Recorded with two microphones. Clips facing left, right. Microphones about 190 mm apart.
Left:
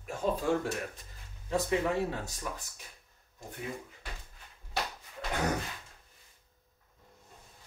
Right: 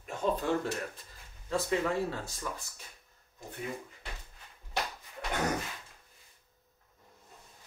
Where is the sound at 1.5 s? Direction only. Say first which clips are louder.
Left 1 dB; 15° left (ahead or behind).